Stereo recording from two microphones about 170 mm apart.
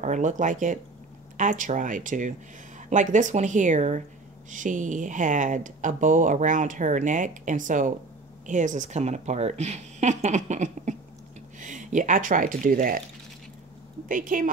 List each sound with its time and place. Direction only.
0.0 s speech: 45° right (ahead or behind)
14.0 s speech: 55° right (ahead or behind)